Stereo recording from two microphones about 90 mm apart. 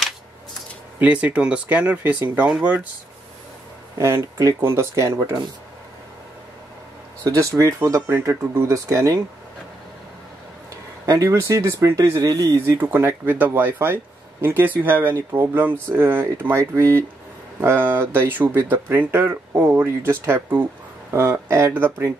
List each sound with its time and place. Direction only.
0.9 s speech: 15° right (ahead or behind)
4.0 s speech: 30° right (ahead or behind)
7.2 s speech: 35° right (ahead or behind)
11.1 s speech: 40° right (ahead or behind)
12.7 s speech: 25° right (ahead or behind)